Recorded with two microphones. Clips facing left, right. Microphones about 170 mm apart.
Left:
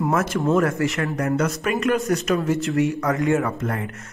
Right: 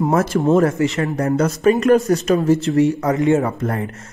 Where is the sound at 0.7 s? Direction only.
20° right (ahead or behind).